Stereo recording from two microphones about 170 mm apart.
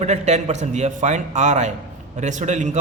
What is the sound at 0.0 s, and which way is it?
A man's voice, 40° right (ahead or behind).